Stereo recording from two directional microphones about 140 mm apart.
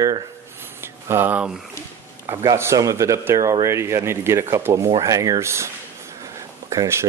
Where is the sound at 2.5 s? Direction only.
20° right (ahead or behind).